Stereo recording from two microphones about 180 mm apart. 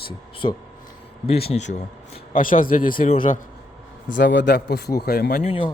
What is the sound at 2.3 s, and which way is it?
Speech, 50° left (ahead or behind).